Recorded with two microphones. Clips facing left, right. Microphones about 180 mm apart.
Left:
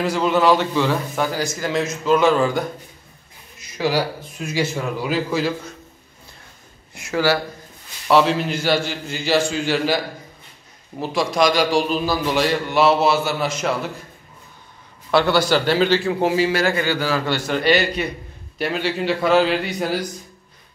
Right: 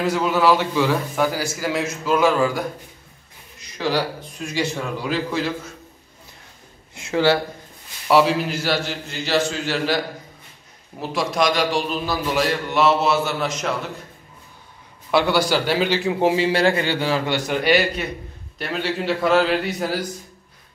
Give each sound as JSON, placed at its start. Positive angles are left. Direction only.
{"t": 0.0, "sound": "a man's voice", "side_deg": -5}
{"t": 3.7, "sound": "a man's voice", "side_deg": 5}
{"t": 6.9, "sound": "speech", "side_deg": -25}
{"t": 8.1, "sound": "a man's voice", "side_deg": -10}
{"t": 11.0, "sound": "a man's voice", "side_deg": 0}
{"t": 15.0, "sound": "a man's voice", "side_deg": -10}
{"t": 18.6, "sound": "a man's voice", "side_deg": 0}